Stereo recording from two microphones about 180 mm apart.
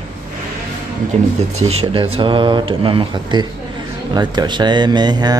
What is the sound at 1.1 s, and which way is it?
Speech, 40° right (ahead or behind).